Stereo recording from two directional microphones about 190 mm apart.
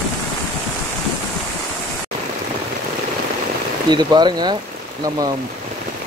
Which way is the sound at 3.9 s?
20° right (ahead or behind).